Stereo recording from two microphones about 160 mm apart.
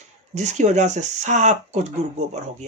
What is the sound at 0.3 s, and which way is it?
Speech, 50° right (ahead or behind).